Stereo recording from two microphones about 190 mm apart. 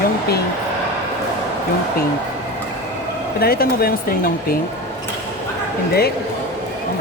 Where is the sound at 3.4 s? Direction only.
55° left (ahead or behind).